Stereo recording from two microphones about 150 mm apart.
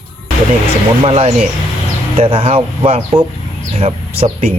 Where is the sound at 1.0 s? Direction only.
40° right (ahead or behind).